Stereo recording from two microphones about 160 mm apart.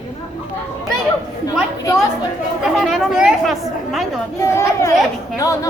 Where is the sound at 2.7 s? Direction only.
Centre (ahead or behind).